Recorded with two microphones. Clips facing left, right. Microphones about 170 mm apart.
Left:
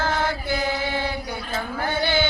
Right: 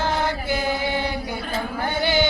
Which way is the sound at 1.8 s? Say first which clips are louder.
Right 1 dB; 15° right (ahead or behind).